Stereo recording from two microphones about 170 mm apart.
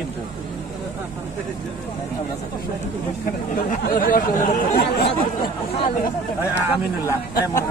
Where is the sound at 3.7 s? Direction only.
55° left (ahead or behind).